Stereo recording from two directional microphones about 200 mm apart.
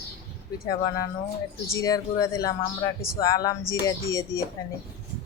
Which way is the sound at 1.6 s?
15° left (ahead or behind).